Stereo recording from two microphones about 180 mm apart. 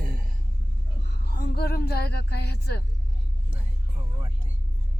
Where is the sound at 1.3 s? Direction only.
60° left (ahead or behind).